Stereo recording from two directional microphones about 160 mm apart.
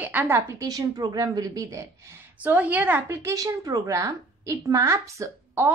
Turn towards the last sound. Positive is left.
turn(degrees=-15)  # may be behind; listen again after turning